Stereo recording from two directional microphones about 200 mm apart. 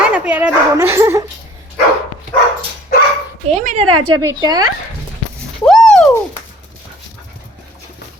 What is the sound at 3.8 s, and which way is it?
Speech, 90° right.